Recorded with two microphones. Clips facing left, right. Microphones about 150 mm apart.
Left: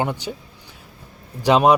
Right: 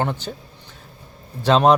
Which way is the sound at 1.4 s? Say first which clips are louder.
Even; 10° left (ahead or behind).